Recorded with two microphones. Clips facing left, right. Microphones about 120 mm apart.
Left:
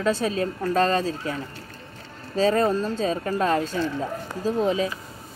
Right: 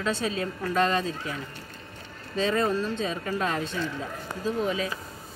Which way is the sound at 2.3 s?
40° left (ahead or behind).